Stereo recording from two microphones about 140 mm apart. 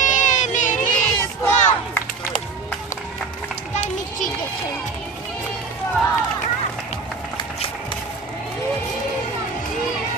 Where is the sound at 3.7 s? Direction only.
60° left (ahead or behind).